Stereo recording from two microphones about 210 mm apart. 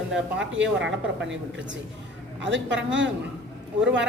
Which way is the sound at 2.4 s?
60° right (ahead or behind).